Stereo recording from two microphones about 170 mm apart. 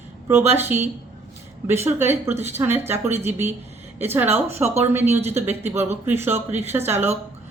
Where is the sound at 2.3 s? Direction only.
40° right (ahead or behind).